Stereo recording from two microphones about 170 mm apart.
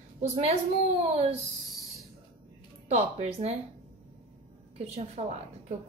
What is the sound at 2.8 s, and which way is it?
Speech, 40° right (ahead or behind).